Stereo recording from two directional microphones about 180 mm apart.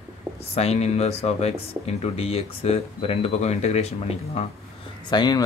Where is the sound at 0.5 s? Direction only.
35° left (ahead or behind).